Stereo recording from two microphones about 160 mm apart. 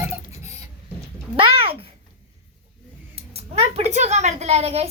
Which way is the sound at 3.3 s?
40° right (ahead or behind).